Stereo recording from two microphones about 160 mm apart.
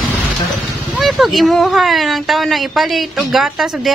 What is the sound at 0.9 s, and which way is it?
Speech, centre (ahead or behind).